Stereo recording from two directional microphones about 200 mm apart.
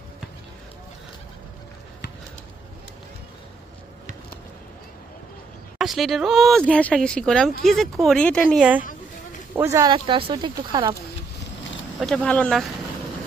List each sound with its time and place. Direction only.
5.8 s speech: centre (ahead or behind)
9.6 s speech: 15° right (ahead or behind)
12.0 s speech: 5° left (ahead or behind)